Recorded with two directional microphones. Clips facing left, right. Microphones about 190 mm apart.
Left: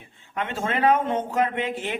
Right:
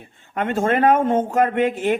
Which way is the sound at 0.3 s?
50° right (ahead or behind).